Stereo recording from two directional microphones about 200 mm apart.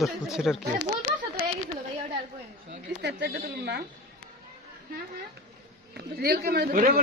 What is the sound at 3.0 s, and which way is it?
Speech, 55° right (ahead or behind).